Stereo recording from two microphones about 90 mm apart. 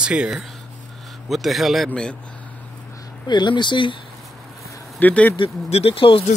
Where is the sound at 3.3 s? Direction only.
55° left (ahead or behind).